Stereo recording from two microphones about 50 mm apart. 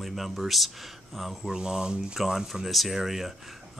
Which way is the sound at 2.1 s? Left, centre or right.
Centre.